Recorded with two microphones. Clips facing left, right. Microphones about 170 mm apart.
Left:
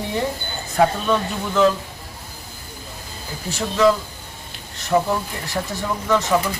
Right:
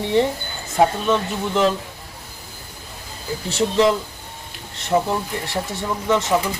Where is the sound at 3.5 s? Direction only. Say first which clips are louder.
Even; 30° right (ahead or behind).